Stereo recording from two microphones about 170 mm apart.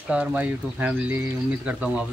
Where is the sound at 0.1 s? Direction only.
10° right (ahead or behind).